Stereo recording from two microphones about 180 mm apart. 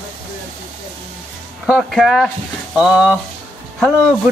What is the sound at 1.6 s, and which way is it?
Speech, centre (ahead or behind).